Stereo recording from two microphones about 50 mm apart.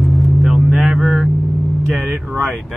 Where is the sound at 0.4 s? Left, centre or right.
Centre.